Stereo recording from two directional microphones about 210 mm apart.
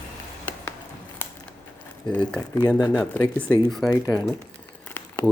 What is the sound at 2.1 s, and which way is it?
Speech, 5° left (ahead or behind).